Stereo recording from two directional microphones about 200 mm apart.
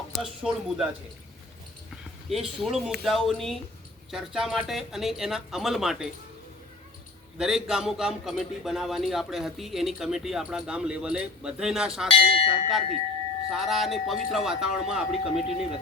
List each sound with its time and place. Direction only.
0.1 s a man's voice: centre (ahead or behind)
2.3 s a man's voice: centre (ahead or behind)
7.3 s a man's voice: centre (ahead or behind)
12.0 s church bell: 25° left (ahead or behind)
13.5 s a man's voice: centre (ahead or behind)